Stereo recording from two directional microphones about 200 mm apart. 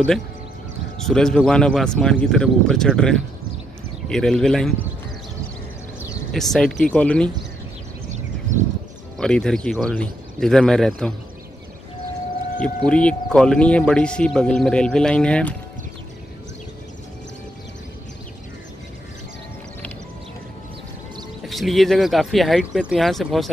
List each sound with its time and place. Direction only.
0.9 s speech: 5° left (ahead or behind)
6.3 s speech: centre (ahead or behind)
8.1 s a sound: 40° right (ahead or behind)
9.2 s speech: 5° left (ahead or behind)
12.5 s speech: 5° left (ahead or behind)
21.5 s speech: centre (ahead or behind)